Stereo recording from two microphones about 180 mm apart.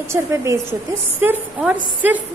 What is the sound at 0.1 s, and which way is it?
A woman's voice, 15° right (ahead or behind).